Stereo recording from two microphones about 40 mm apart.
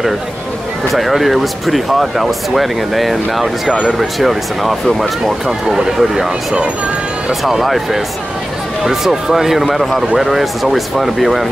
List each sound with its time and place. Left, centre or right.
0.9 s speech: centre
3.6 s speech: right
4.0 s speech: centre
5.7 s speech: centre
7.4 s speech: centre